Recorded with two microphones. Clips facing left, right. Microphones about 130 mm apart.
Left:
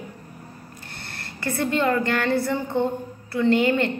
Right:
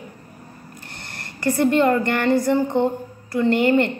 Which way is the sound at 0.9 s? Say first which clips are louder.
Left 1 dB; 15° right (ahead or behind).